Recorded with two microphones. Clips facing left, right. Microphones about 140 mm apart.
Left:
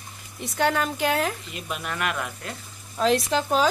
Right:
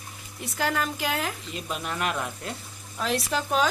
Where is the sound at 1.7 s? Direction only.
35° right (ahead or behind).